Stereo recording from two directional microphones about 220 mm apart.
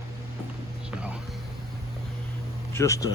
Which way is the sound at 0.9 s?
5° right (ahead or behind).